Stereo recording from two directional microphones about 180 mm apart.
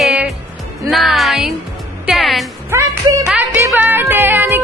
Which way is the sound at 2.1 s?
Centre (ahead or behind).